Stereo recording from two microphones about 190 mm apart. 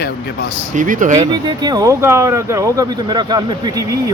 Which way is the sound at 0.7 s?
45° right (ahead or behind).